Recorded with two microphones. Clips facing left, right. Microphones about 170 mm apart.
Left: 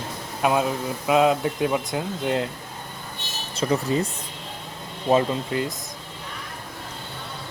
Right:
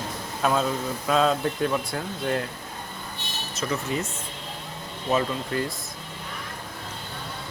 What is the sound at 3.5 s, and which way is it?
Speech, 35° left (ahead or behind).